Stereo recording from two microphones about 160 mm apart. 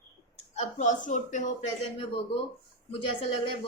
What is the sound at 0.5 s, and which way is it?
Speech, 50° left (ahead or behind).